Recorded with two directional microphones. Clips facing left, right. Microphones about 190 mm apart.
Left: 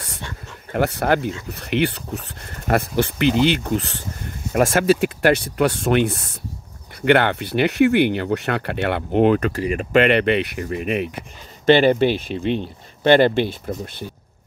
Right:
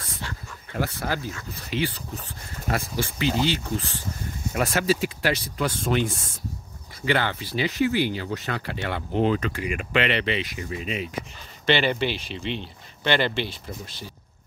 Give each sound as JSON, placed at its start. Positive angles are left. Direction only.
{"t": 0.7, "sound": "speech", "side_deg": 65}
{"t": 4.6, "sound": "speech", "side_deg": 50}
{"t": 9.5, "sound": "speech", "side_deg": 40}
{"t": 11.6, "sound": "speech", "side_deg": 45}